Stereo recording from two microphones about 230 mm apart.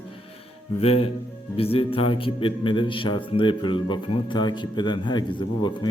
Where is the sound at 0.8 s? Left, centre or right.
Left.